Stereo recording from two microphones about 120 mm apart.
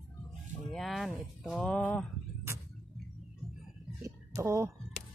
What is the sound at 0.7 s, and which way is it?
Speech, centre (ahead or behind).